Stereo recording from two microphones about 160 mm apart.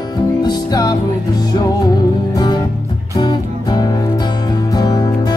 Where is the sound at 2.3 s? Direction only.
25° left (ahead or behind).